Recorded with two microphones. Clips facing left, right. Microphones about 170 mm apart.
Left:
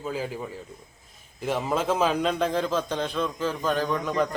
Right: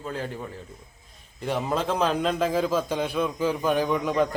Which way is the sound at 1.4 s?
Centre (ahead or behind).